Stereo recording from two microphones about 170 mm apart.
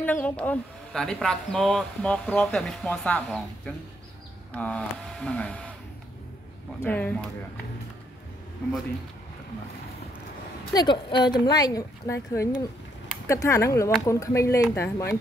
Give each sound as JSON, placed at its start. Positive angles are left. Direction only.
{"t": 0.0, "sound": "speech", "side_deg": 10}
{"t": 6.8, "sound": "speech", "side_deg": 10}
{"t": 10.6, "sound": "speech", "side_deg": 25}